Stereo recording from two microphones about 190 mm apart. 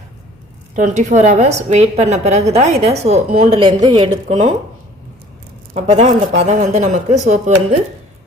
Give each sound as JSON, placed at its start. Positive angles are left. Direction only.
{"t": 0.8, "sound": "a woman's voice", "side_deg": -40}
{"t": 5.7, "sound": "a woman's voice", "side_deg": -35}